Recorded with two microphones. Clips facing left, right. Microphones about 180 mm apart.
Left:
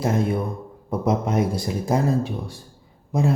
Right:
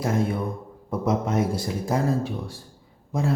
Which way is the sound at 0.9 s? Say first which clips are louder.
Left 2 dB; 15° left (ahead or behind).